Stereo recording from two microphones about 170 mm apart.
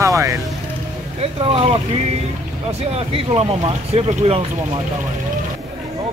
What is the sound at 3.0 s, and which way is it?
Speech, 35° right (ahead or behind).